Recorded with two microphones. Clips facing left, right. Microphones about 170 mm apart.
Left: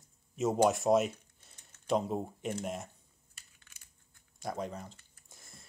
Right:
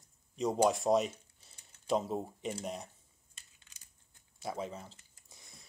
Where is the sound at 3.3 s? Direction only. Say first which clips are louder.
Left 1 dB; 20° right (ahead or behind).